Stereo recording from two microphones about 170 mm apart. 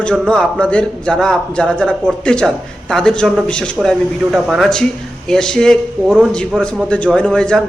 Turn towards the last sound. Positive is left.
turn(degrees=5)  # may be behind; listen again after turning